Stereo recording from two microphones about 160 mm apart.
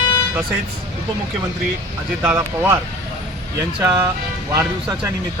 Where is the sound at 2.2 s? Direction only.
15° right (ahead or behind).